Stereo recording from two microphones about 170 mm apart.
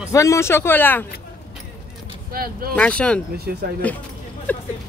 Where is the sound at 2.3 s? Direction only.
60° right (ahead or behind).